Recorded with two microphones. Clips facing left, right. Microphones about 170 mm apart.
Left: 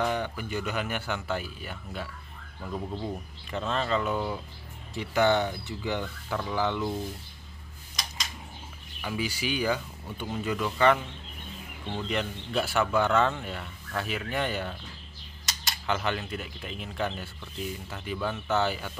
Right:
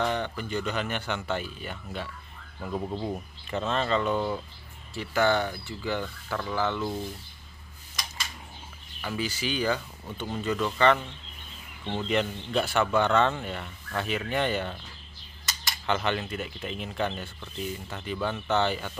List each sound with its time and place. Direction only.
0.0 s speech: 10° left (ahead or behind)
2.6 s speech: 15° right (ahead or behind)
3.4 s speech: centre (ahead or behind)
4.9 s speech: 20° left (ahead or behind)
9.0 s speech: 10° left (ahead or behind)
12.1 s speech: centre (ahead or behind)
15.9 s speech: centre (ahead or behind)